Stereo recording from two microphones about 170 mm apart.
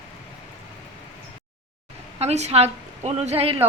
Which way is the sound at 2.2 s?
40° right (ahead or behind).